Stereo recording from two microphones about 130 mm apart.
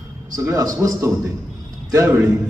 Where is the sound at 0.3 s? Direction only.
25° right (ahead or behind).